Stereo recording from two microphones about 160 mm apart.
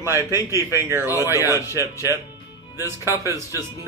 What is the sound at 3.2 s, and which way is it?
Speech, 20° right (ahead or behind).